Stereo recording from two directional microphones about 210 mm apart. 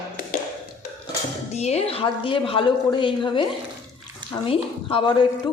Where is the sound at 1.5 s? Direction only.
30° left (ahead or behind).